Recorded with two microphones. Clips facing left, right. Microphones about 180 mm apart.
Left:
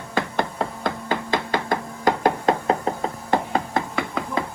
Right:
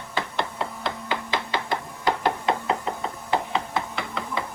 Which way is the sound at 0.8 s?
45° left (ahead or behind).